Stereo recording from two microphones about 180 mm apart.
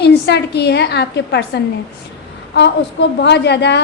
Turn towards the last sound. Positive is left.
turn(degrees=70)  # may be behind; listen again after turning